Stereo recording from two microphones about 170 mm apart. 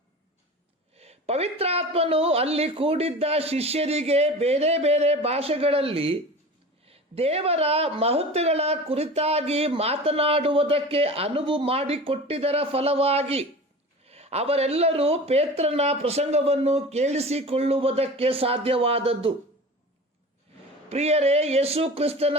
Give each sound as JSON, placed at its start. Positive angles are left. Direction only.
{"t": 0.9, "sound": "a woman's voice", "side_deg": -35}
{"t": 20.9, "sound": "a woman's voice", "side_deg": -40}